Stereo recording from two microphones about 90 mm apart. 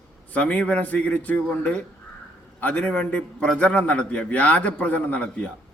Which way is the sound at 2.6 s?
15° left (ahead or behind).